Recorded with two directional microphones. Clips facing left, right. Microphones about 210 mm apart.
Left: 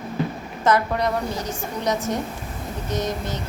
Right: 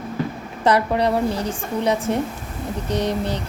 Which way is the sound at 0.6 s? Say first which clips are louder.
Right 2 dB; 30° right (ahead or behind).